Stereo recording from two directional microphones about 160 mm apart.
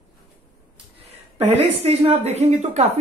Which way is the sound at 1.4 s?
40° right (ahead or behind).